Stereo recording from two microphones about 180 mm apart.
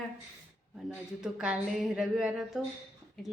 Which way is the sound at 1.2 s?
5° right (ahead or behind).